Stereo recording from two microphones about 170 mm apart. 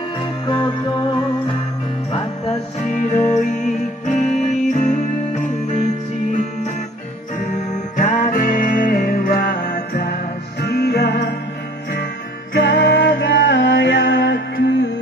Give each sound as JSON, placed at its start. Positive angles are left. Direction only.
{"t": 0.5, "sound": "music", "side_deg": 25}
{"t": 2.8, "sound": "music", "side_deg": 45}
{"t": 7.3, "sound": "music", "side_deg": 45}
{"t": 12.5, "sound": "music", "side_deg": 85}